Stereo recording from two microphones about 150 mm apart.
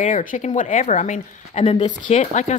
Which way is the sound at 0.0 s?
60° left (ahead or behind).